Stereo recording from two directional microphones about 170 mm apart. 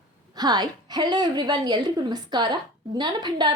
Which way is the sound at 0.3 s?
25° right (ahead or behind).